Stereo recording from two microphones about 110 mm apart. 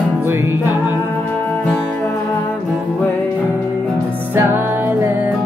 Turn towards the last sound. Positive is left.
turn(degrees=-20)  # may be behind; listen again after turning